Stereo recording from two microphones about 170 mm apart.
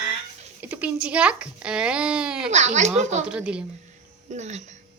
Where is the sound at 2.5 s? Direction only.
45° right (ahead or behind).